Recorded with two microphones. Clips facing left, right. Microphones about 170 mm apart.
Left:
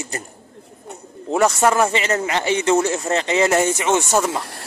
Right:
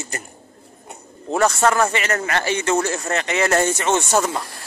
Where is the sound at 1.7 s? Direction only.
20° left (ahead or behind).